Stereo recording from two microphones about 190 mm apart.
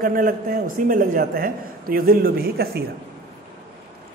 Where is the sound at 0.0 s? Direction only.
45° right (ahead or behind).